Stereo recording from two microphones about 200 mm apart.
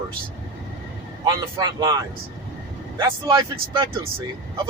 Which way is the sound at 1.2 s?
20° right (ahead or behind).